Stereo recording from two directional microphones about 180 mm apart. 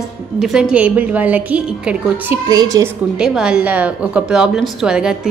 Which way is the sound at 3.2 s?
5° right (ahead or behind).